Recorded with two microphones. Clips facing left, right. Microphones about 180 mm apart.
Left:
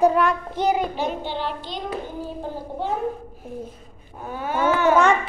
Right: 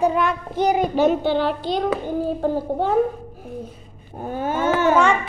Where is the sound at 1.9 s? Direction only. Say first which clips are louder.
Right 7 dB; 60° right (ahead or behind).